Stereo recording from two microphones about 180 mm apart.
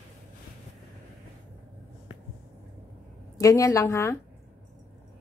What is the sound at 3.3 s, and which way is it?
Speech, 15° left (ahead or behind).